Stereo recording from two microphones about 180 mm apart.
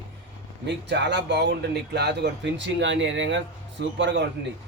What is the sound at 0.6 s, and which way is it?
Speech, 70° right (ahead or behind).